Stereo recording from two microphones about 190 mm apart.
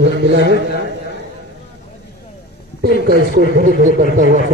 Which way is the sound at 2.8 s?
55° right (ahead or behind).